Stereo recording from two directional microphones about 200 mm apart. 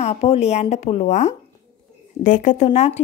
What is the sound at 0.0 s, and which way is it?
Speech, 30° left (ahead or behind).